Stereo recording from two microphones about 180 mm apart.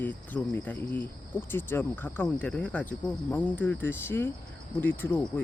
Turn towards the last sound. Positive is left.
turn(degrees=10)  # may be behind; listen again after turning